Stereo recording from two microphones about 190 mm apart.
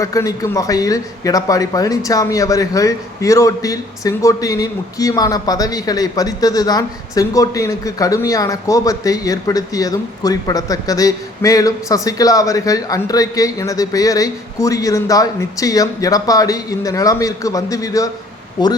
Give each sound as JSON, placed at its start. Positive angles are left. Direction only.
{"t": 0.0, "sound": "a man's voice", "side_deg": 15}